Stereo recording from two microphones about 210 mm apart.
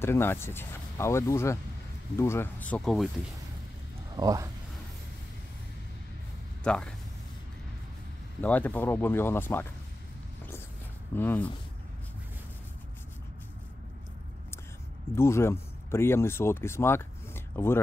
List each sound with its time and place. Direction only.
0.0 s speech: 10° left (ahead or behind)
4.1 s speech: 15° right (ahead or behind)
6.6 s speech: 5° left (ahead or behind)
8.4 s speech: 10° left (ahead or behind)
11.1 s speech: 10° left (ahead or behind)
15.1 s speech: 10° left (ahead or behind)